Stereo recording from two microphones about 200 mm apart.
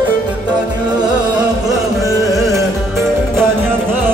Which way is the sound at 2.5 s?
15° right (ahead or behind).